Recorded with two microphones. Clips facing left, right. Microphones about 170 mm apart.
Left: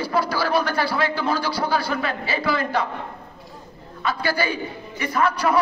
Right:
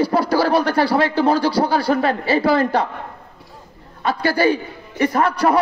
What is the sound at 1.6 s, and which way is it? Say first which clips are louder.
A man's voice: right 6 dB; 40° right (ahead or behind).